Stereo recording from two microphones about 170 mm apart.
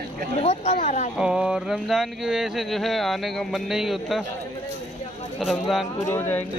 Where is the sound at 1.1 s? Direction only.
5° right (ahead or behind).